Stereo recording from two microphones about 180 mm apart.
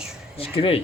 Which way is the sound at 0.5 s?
30° left (ahead or behind).